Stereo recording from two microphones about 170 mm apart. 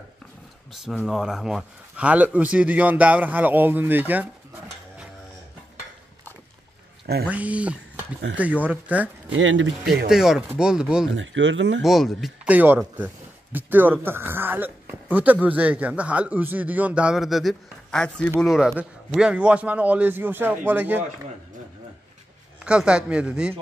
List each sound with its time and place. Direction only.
0.7 s a man's voice: 5° right (ahead or behind)
7.2 s a man's voice: 10° right (ahead or behind)
11.1 s speech: 90° right
11.8 s a man's voice: centre (ahead or behind)
22.6 s speech: 5° right (ahead or behind)